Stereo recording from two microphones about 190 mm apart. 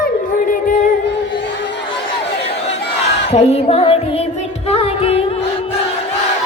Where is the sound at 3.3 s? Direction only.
35° left (ahead or behind).